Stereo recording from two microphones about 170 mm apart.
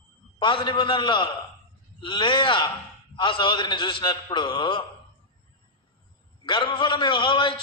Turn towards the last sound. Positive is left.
turn(degrees=30)  # may be behind; listen again after turning